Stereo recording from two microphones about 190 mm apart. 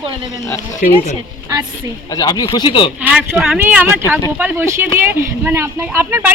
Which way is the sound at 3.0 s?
5° right (ahead or behind).